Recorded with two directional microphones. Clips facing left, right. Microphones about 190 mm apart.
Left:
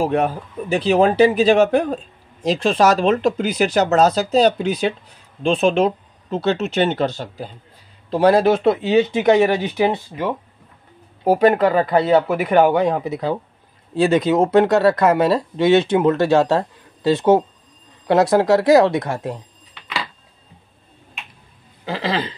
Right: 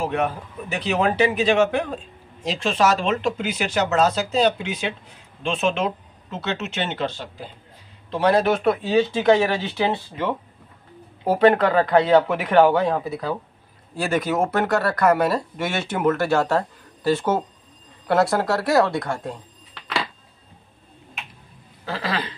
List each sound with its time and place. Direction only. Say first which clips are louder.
0.0 s speech: left 5 dB; 35° left (ahead or behind)
21.8 s speech: left 4 dB; 20° left (ahead or behind)